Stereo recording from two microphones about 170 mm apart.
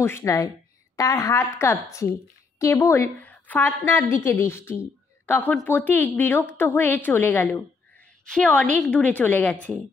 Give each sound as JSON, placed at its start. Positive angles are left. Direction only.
{"t": 0.0, "sound": "a woman's voice", "side_deg": 15}